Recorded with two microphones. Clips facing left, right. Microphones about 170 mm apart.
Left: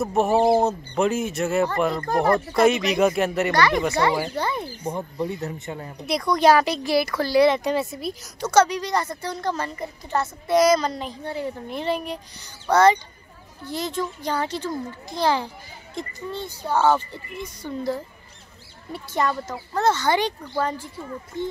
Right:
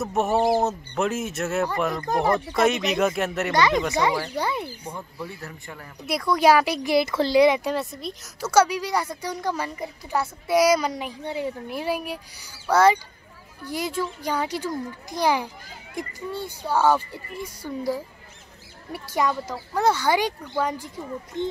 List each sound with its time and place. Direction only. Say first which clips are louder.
0.0 s speech: left 3 dB; centre (ahead or behind)
3.5 s a woman's voice: right 2 dB; 20° right (ahead or behind)
4.9 s speech: left 8 dB; 20° left (ahead or behind)
6.0 s a woman's voice: left 1 dB; 5° right (ahead or behind)
7.6 s a woman's voice: left 3 dB; centre (ahead or behind); by 21.5 s 15° right (ahead or behind)